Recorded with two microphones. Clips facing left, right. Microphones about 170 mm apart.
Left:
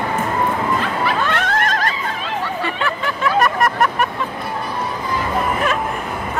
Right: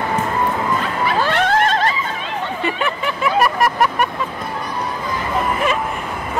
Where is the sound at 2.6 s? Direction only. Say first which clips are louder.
Right 1 dB; 20° right (ahead or behind).